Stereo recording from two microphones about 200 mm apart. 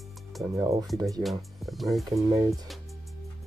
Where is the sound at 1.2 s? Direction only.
Centre (ahead or behind).